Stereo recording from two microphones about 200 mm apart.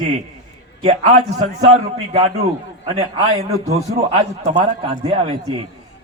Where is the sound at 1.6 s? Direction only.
35° right (ahead or behind).